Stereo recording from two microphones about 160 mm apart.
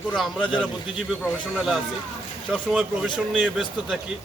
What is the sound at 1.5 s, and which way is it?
A man's voice, 5° right (ahead or behind).